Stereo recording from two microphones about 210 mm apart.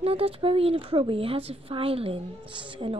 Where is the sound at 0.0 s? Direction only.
30° right (ahead or behind).